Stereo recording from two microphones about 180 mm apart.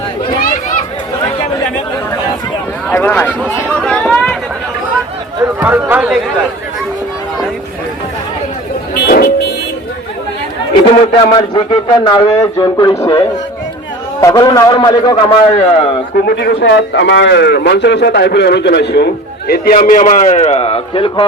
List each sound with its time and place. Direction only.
2.9 s speech: 10° left (ahead or behind)
3.8 s chatter: 5° left (ahead or behind)
5.5 s speech: 10° right (ahead or behind)
9.0 s music: 55° left (ahead or behind)
10.8 s speech: 30° left (ahead or behind)
16.2 s a man's voice: 65° left (ahead or behind); by 21.2 s 30° left (ahead or behind)